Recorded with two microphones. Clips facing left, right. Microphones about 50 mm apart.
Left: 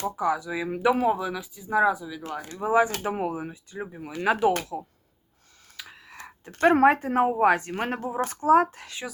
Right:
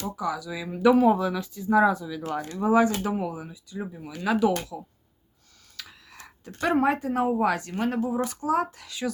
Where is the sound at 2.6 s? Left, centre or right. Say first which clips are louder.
Right 1 dB; centre.